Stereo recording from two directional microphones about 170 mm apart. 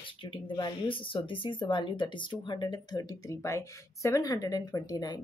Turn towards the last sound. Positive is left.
turn(degrees=25)  # may be behind; listen again after turning